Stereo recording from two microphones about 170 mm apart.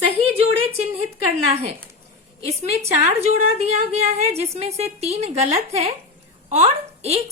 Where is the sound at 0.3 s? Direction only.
35° right (ahead or behind).